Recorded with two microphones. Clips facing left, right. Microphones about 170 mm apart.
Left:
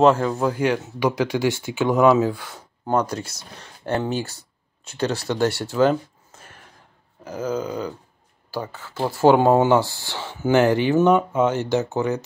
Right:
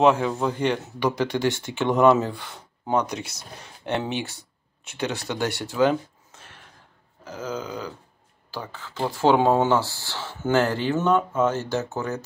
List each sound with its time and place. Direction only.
0.0 s speech: centre (ahead or behind)
4.4 s a sound: 20° right (ahead or behind)
5.3 s speech: 15° right (ahead or behind)
7.2 s speech: 10° left (ahead or behind)